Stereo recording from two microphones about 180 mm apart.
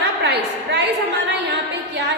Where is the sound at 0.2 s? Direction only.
70° right (ahead or behind).